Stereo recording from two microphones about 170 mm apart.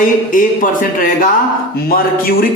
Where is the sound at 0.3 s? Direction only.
50° left (ahead or behind).